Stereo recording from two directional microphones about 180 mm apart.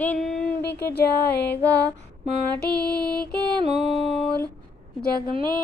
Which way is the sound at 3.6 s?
35° right (ahead or behind).